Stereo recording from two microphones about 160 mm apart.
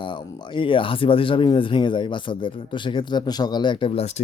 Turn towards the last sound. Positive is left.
turn(degrees=40)  # may be behind; listen again after turning